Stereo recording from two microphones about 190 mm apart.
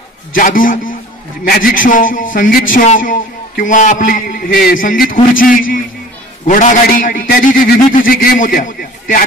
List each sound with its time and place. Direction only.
0.3 s a man's voice: 45° left (ahead or behind)